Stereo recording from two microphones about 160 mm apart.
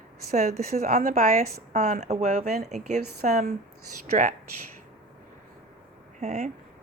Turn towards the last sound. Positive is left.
turn(degrees=-45)  # may be behind; listen again after turning